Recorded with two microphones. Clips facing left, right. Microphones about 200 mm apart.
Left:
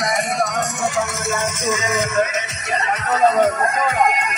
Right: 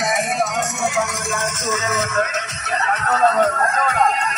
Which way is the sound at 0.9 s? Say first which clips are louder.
Left 1 dB; 10° left (ahead or behind).